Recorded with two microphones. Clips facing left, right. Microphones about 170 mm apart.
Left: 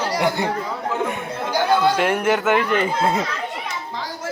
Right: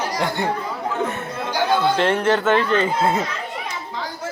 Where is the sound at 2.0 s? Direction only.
10° left (ahead or behind).